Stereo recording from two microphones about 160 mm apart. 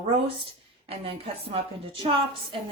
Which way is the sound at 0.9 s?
35° right (ahead or behind).